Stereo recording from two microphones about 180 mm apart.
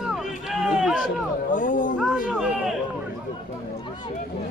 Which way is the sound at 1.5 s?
45° left (ahead or behind).